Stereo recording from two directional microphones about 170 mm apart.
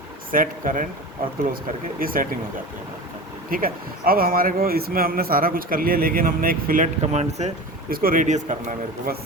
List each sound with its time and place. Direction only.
0.3 s speech: 50° right (ahead or behind)
2.0 s speech: 55° right (ahead or behind)
3.5 s speech: 60° right (ahead or behind); by 7.5 s 40° right (ahead or behind)
7.9 s speech: 60° right (ahead or behind)